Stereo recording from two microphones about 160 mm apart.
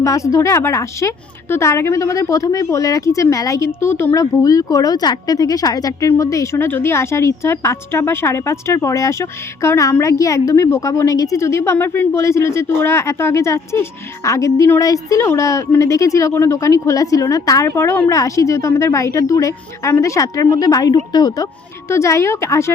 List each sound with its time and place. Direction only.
0.0 s a woman's voice: 20° left (ahead or behind)